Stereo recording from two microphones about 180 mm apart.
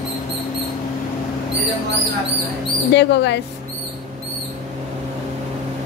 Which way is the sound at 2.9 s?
70° left (ahead or behind).